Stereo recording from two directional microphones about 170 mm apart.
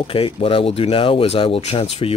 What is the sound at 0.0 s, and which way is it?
Speech, 30° left (ahead or behind).